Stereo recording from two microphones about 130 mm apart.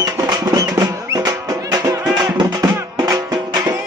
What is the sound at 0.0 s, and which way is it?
Music, 30° right (ahead or behind).